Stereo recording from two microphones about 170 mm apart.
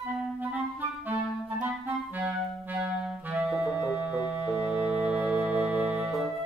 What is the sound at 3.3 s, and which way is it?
Music, 5° right (ahead or behind).